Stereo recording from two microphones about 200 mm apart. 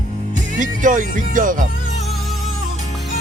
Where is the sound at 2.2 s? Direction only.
Centre (ahead or behind).